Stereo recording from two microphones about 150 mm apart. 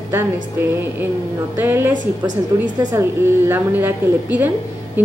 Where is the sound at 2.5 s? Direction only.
25° right (ahead or behind).